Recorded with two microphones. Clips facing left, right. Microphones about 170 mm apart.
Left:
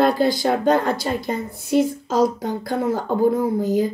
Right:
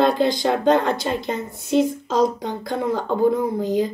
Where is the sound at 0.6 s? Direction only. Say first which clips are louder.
Right 2 dB; 20° right (ahead or behind).